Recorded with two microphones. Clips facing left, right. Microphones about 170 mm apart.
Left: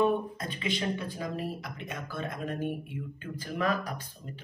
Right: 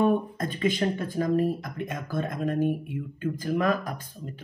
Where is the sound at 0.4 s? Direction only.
50° right (ahead or behind).